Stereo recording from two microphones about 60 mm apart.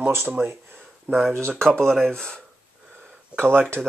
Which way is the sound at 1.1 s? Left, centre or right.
Right.